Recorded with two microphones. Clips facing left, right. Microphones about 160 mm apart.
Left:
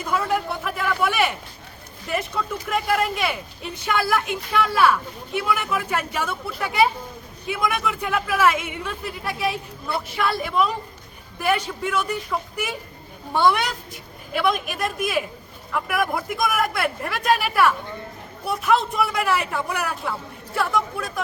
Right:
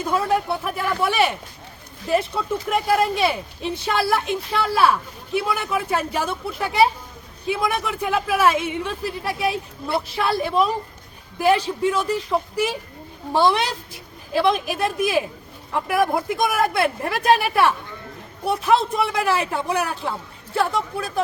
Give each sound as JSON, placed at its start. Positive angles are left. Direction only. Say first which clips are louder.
{"t": 0.0, "sound": "a woman's voice", "louder": "right 2 dB", "side_deg": -30}
{"t": 15.7, "sound": "speech", "louder": "right 4 dB", "side_deg": -30}